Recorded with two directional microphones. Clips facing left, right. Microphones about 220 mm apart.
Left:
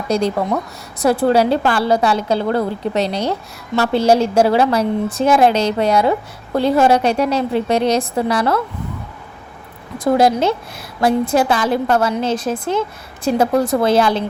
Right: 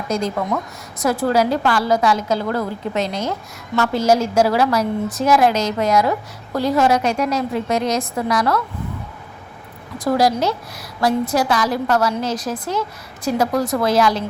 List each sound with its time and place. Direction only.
0.3 s a woman's voice: 30° left (ahead or behind)
10.0 s a woman's voice: 25° left (ahead or behind)